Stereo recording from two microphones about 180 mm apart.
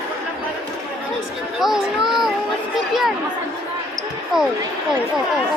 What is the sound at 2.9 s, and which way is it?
Chatter, centre (ahead or behind).